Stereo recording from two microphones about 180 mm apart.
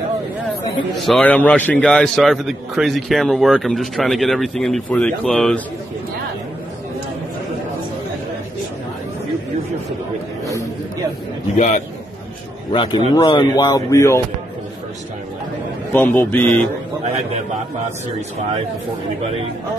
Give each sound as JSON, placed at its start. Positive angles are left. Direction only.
{"t": 1.0, "sound": "a man's voice", "side_deg": 0}
{"t": 11.5, "sound": "a man's voice", "side_deg": 40}
{"t": 12.7, "sound": "speech", "side_deg": 30}
{"t": 15.9, "sound": "a man's voice", "side_deg": 10}